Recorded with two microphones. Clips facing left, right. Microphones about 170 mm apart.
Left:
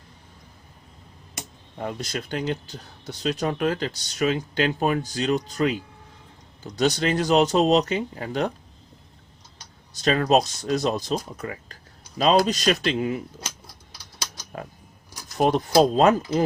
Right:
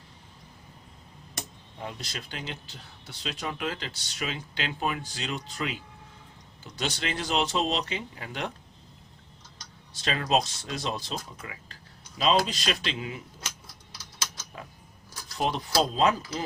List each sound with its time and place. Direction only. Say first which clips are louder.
1.8 s speech: left 8 dB; 50° left (ahead or behind)
9.9 s speech: left 7 dB; 45° left (ahead or behind)
14.5 s speech: left 11 dB; 50° left (ahead or behind)